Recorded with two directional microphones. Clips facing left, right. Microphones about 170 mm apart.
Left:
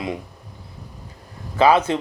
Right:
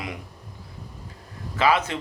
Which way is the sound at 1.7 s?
30° left (ahead or behind).